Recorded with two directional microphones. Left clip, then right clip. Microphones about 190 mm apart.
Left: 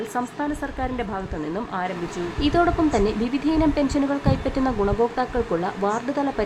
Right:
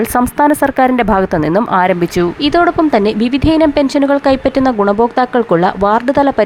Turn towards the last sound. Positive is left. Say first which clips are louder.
# right 13 dB
turn(degrees=-40)  # may be behind; listen again after turning